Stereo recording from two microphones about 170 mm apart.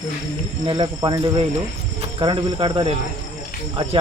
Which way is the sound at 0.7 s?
30° right (ahead or behind).